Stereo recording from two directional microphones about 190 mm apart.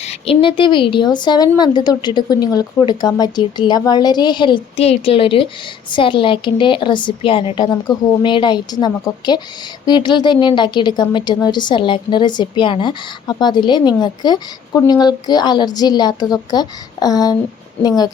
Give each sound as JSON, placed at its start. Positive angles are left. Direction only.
{"t": 0.0, "sound": "speech", "side_deg": 30}